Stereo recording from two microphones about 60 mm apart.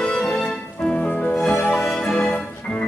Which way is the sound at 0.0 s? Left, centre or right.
Centre.